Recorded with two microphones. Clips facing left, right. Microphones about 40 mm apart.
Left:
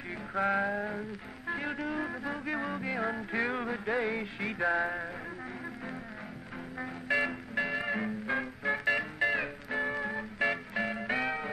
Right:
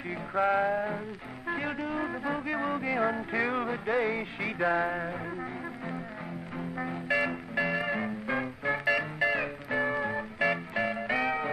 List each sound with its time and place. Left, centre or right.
0.3 s music: centre
7.6 s music: centre
8.8 s music: right
9.4 s music: centre